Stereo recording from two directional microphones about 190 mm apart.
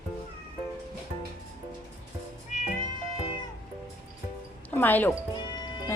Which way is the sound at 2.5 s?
40° left (ahead or behind).